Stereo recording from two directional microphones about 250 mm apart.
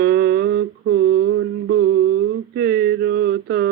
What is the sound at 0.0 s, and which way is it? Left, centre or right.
Mantra, right.